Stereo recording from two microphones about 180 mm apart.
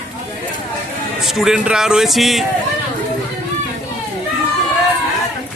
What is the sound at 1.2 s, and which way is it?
Speech, centre (ahead or behind).